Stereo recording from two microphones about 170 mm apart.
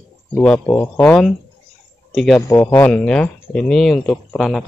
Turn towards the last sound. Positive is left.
turn(degrees=5)  # may be behind; listen again after turning